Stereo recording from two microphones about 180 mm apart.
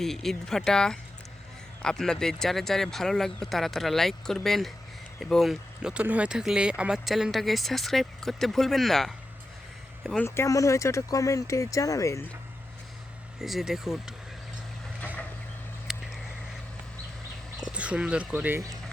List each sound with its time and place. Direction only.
0.0 s speech: centre (ahead or behind)
10.2 s speech: 15° left (ahead or behind)
13.4 s speech: centre (ahead or behind)
15.0 s vehicle: 10° left (ahead or behind)
15.9 s a sound: centre (ahead or behind)
17.7 s speech: 5° right (ahead or behind)